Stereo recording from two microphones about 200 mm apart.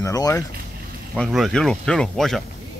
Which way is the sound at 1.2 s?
Centre (ahead or behind).